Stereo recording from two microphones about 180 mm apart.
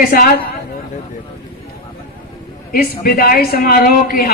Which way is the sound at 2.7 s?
55° left (ahead or behind).